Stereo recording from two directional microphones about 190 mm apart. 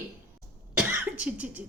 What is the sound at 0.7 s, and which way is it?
Cough, 10° right (ahead or behind).